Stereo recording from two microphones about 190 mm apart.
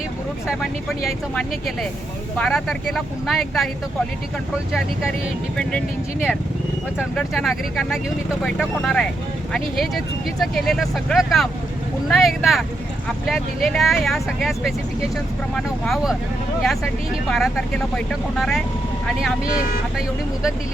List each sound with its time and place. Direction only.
0.4 s speech: centre (ahead or behind)
5.5 s speech: centre (ahead or behind)
15.5 s speech: centre (ahead or behind)
17.2 s speech: centre (ahead or behind)
19.5 s speech: 50° left (ahead or behind)